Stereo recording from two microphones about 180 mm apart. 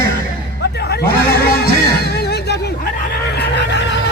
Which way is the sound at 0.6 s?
65° left (ahead or behind).